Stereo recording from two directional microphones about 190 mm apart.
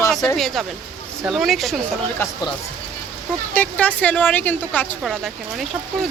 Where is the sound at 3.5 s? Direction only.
10° left (ahead or behind).